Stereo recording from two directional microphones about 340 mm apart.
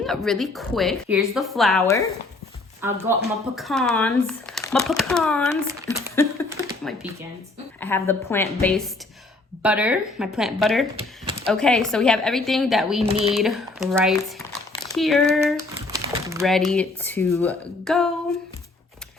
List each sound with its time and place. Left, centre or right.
0.0 s a woman's voice: centre
10.9 s speech: centre
11.4 s a woman's voice: centre
13.0 s speech: centre
13.3 s a woman's voice: centre
14.8 s crumpling: centre
16.7 s a woman's voice: centre